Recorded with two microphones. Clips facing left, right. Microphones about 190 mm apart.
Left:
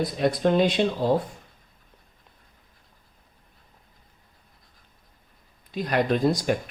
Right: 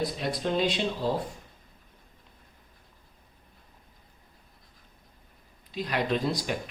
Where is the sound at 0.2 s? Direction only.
55° left (ahead or behind).